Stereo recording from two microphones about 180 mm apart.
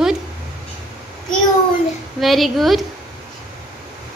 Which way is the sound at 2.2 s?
Centre (ahead or behind).